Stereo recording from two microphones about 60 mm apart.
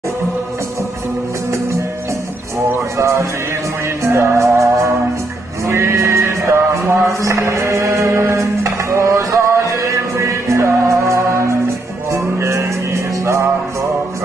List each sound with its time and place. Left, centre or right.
3.0 s music: right
7.1 s mantra: right
8.9 s music: right